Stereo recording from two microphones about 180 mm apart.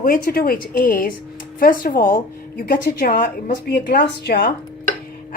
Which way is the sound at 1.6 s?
50° left (ahead or behind).